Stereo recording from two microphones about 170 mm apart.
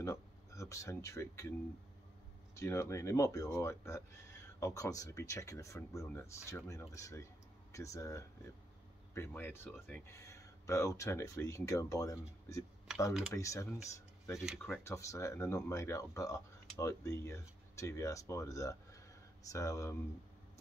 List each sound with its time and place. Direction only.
0.0 s speech: 15° left (ahead or behind)
2.5 s speech: 15° left (ahead or behind)
13.3 s speech: 20° left (ahead or behind)